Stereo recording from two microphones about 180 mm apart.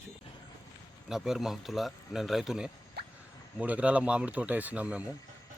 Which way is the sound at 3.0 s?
65° right (ahead or behind).